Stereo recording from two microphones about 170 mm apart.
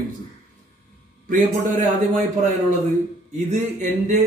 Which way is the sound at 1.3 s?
50° right (ahead or behind).